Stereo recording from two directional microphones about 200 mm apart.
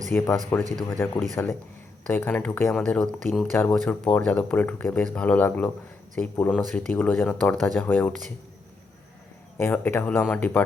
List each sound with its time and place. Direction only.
0.1 s speech: 10° left (ahead or behind)
9.6 s speech: 10° left (ahead or behind)